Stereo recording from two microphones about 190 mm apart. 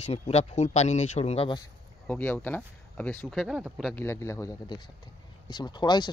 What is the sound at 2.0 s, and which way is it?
Speech, 10° left (ahead or behind).